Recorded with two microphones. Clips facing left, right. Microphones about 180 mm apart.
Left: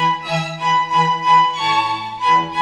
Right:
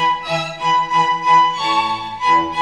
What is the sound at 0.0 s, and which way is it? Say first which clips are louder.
Music: even; centre (ahead or behind).